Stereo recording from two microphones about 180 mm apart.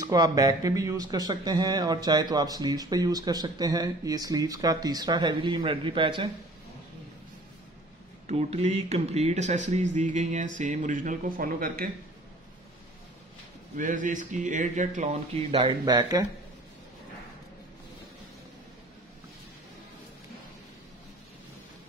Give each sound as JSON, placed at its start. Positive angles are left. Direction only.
{"t": 0.1, "sound": "speech", "side_deg": -20}
{"t": 8.3, "sound": "speech", "side_deg": -35}
{"t": 13.7, "sound": "speech", "side_deg": -45}
{"t": 15.3, "sound": "speech", "side_deg": -30}